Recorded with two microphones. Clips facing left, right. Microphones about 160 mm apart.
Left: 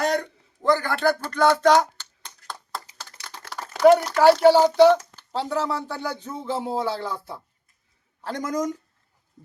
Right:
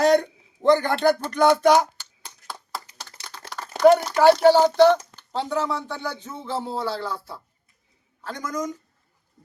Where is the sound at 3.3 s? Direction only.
5° left (ahead or behind).